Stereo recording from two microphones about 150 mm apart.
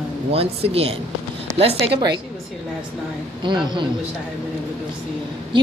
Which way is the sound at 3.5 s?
30° right (ahead or behind).